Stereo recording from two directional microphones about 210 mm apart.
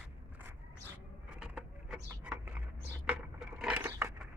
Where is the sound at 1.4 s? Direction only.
5° right (ahead or behind).